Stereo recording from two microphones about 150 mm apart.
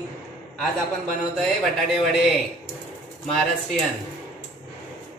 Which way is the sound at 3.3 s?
Centre (ahead or behind).